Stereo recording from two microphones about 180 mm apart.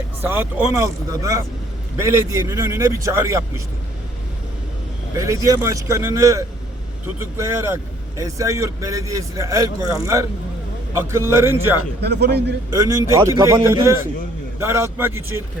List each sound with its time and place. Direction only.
0.2 s a man's voice: 10° right (ahead or behind)
5.1 s a man's voice: 20° right (ahead or behind)
12.0 s a man's voice: 65° right (ahead or behind)
12.7 s a man's voice: 20° right (ahead or behind)